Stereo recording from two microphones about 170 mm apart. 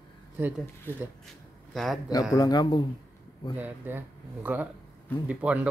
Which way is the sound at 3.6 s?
10° right (ahead or behind).